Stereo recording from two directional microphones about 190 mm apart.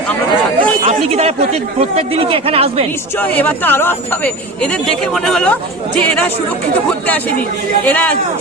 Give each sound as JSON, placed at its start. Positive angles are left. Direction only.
{"t": 2.0, "sound": "speech", "side_deg": -30}
{"t": 3.2, "sound": "speech", "side_deg": 10}
{"t": 7.9, "sound": "speech", "side_deg": 10}